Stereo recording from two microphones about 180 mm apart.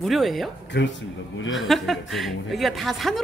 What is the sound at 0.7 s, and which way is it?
Speech, 75° left (ahead or behind).